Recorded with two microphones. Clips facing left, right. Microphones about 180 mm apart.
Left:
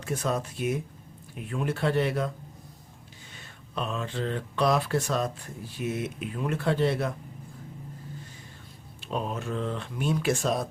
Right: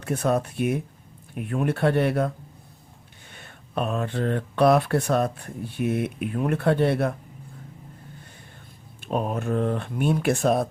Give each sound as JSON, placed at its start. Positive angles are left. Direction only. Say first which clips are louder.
{"t": 0.0, "sound": "speech", "louder": "right 6 dB", "side_deg": -60}
{"t": 3.3, "sound": "speech", "louder": "right 6 dB", "side_deg": -60}
{"t": 9.0, "sound": "speech", "louder": "right 5 dB", "side_deg": -50}